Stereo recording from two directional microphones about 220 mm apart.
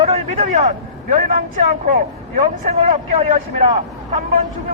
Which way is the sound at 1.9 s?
30° right (ahead or behind).